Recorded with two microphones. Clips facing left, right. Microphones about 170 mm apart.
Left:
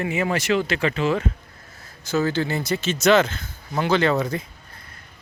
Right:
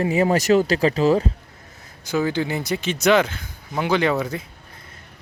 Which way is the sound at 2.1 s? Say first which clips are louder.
Even; 15° right (ahead or behind).